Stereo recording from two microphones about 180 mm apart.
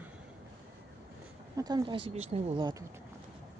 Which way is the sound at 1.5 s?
20° right (ahead or behind).